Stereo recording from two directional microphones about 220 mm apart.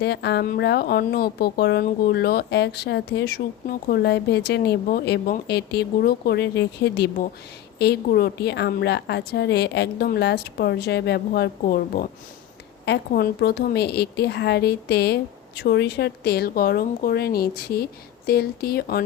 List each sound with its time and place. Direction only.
0.0 s a woman's voice: 50° left (ahead or behind)